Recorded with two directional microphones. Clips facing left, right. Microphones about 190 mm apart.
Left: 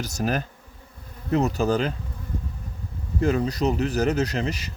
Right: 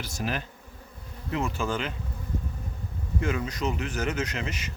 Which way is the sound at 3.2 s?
35° left (ahead or behind).